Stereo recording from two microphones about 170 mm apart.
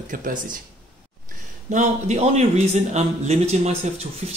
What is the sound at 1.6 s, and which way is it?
A man's voice, 45° right (ahead or behind).